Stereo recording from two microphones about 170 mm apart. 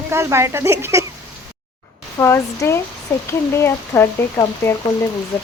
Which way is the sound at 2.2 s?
15° left (ahead or behind).